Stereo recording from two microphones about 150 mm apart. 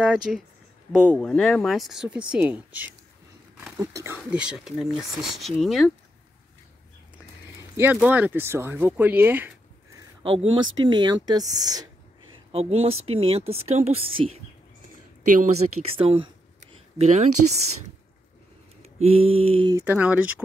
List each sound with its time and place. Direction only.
0.0 s speech: 5° right (ahead or behind); by 4.2 s 20° right (ahead or behind)
4.2 s speech: 5° right (ahead or behind)
7.7 s speech: 10° right (ahead or behind)
10.2 s speech: 35° right (ahead or behind)
12.5 s speech: 40° right (ahead or behind)
15.2 s speech: 55° right (ahead or behind)
16.0 s speech: 35° right (ahead or behind)
17.0 s speech: 50° right (ahead or behind)
18.8 s a sound: 45° right (ahead or behind)
19.7 s speech: 15° right (ahead or behind)